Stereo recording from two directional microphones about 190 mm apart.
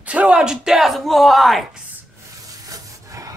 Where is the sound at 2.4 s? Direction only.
20° right (ahead or behind).